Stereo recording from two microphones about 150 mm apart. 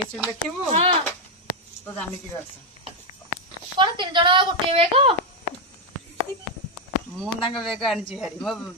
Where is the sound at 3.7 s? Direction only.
30° right (ahead or behind).